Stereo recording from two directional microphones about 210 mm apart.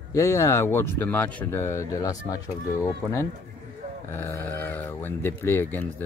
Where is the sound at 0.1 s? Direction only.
15° left (ahead or behind).